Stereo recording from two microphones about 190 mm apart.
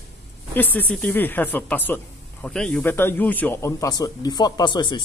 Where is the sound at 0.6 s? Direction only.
10° left (ahead or behind).